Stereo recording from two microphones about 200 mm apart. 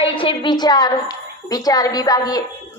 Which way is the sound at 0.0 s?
25° left (ahead or behind).